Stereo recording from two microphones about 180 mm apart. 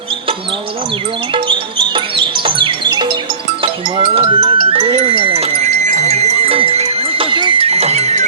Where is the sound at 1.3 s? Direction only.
25° right (ahead or behind).